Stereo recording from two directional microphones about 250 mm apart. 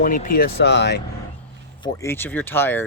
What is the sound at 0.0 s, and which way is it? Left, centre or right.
Speech, left.